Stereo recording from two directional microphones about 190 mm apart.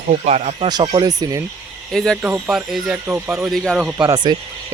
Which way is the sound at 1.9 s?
Centre (ahead or behind).